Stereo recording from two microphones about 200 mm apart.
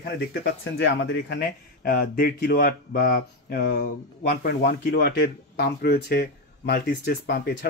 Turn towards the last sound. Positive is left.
turn(degrees=55)  # may be behind; listen again after turning